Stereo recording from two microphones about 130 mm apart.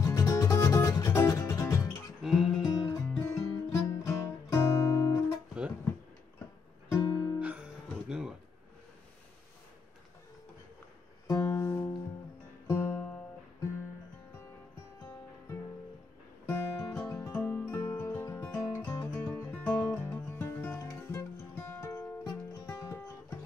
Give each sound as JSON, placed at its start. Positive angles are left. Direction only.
{"t": 0.0, "sound": "music", "side_deg": 25}
{"t": 2.2, "sound": "music", "side_deg": 0}
{"t": 2.9, "sound": "guitar", "side_deg": 20}
{"t": 7.0, "sound": "guitar", "side_deg": 30}
{"t": 7.3, "sound": "music", "side_deg": -10}
{"t": 11.2, "sound": "music", "side_deg": 25}
{"t": 16.4, "sound": "music", "side_deg": 15}